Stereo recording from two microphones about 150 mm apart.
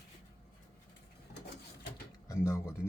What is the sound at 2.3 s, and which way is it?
Speech, 20° left (ahead or behind).